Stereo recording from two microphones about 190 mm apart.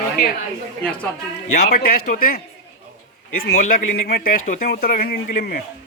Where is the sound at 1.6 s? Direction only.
55° left (ahead or behind).